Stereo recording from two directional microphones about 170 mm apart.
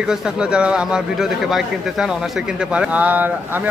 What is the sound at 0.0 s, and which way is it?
Speech, 5° right (ahead or behind).